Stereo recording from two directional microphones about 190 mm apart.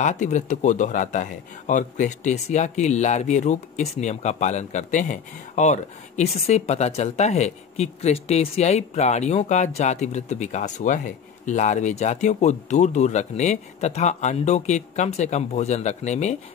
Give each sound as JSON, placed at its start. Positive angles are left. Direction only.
{"t": 0.0, "sound": "speech", "side_deg": 40}